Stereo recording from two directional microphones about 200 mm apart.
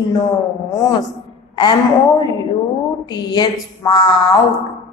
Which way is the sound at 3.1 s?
20° left (ahead or behind).